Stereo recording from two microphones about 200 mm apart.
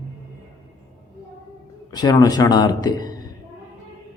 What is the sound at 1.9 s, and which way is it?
Speech, 20° left (ahead or behind).